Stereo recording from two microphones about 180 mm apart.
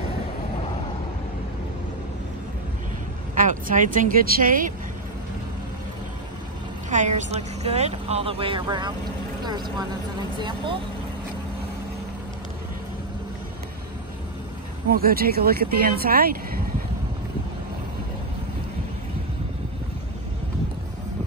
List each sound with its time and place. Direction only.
3.3 s speech: 45° right (ahead or behind)
6.9 s a woman's voice: 40° right (ahead or behind); by 10.8 s 25° right (ahead or behind)
15.0 s speech: 55° right (ahead or behind)